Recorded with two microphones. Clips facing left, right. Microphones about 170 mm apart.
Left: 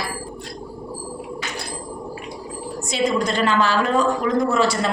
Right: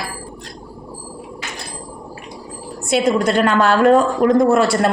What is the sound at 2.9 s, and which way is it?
A woman's voice, 55° right (ahead or behind).